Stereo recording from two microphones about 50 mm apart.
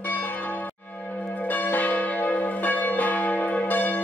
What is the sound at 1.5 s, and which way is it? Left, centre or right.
Church bell, left.